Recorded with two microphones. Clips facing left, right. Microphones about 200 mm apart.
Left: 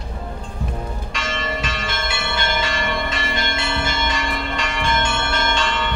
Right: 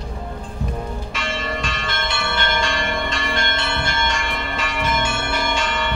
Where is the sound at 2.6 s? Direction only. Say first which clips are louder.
Even; 5° left (ahead or behind).